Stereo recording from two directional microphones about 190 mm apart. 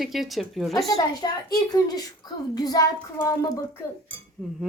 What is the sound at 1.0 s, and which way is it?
A child's voice, 20° left (ahead or behind).